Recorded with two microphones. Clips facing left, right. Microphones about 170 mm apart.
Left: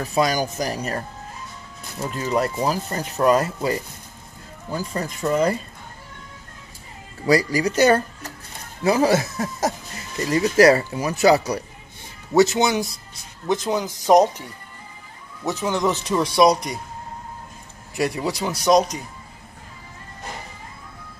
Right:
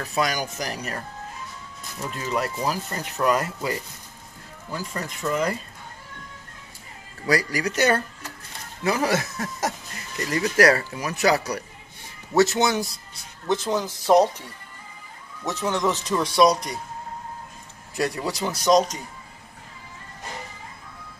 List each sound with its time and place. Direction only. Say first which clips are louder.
0.1 s speech: left 5 dB; 30° left (ahead or behind)
2.0 s speech: left 5 dB; 30° left (ahead or behind)
4.6 s speech: left 5 dB; 20° left (ahead or behind)
5.2 s speech: left 5 dB; 35° left (ahead or behind)
7.2 s speech: left 5 dB; 25° left (ahead or behind)
15.4 s speech: left 2 dB; 10° left (ahead or behind)
17.9 s speech: left 3 dB; 10° left (ahead or behind)